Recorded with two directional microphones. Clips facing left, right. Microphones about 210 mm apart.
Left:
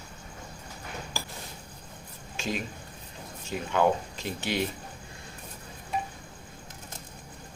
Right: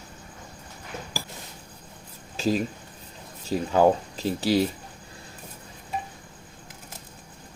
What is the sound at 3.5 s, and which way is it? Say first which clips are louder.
Speech: right 5 dB; 35° right (ahead or behind).